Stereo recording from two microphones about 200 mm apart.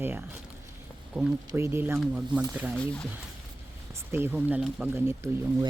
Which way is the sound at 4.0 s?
10° right (ahead or behind).